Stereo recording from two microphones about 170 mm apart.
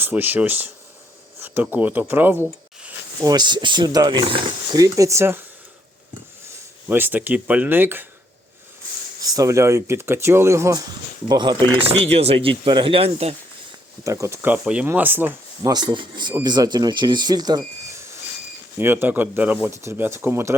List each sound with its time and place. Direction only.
0.0 s speech: 10° right (ahead or behind)
3.2 s speech: 25° right (ahead or behind)
6.8 s speech: 10° right (ahead or behind)
9.2 s speech: 20° right (ahead or behind)
11.9 s speech: 35° right (ahead or behind)
14.0 s speech: 15° right (ahead or behind)
15.7 s speech: 25° right (ahead or behind)